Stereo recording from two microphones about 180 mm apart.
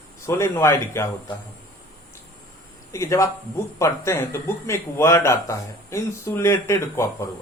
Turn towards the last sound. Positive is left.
turn(degrees=15)  # may be behind; listen again after turning